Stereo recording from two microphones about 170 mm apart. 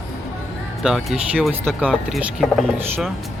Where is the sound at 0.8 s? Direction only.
5° right (ahead or behind).